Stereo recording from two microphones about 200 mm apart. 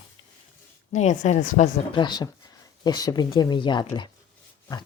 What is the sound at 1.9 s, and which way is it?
Speech, 20° left (ahead or behind).